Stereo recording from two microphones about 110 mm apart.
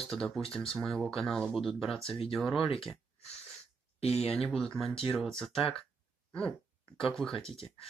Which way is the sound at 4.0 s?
65° left (ahead or behind).